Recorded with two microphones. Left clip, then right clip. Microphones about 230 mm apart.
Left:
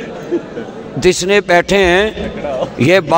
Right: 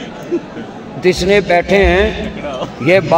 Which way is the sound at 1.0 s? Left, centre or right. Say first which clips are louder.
Even; left.